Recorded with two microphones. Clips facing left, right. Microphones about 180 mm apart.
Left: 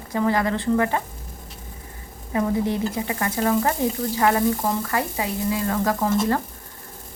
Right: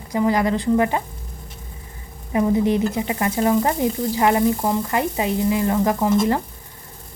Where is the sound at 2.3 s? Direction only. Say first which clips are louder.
Right 4 dB; 20° right (ahead or behind).